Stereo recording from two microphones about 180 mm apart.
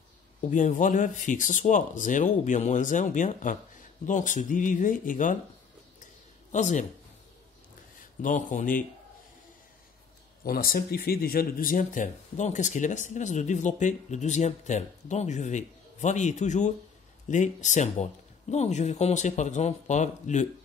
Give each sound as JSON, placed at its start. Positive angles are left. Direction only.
{"t": 0.4, "sound": "speech", "side_deg": 45}
{"t": 6.5, "sound": "speech", "side_deg": 40}
{"t": 8.0, "sound": "a man's voice", "side_deg": 45}
{"t": 10.4, "sound": "speech", "side_deg": 55}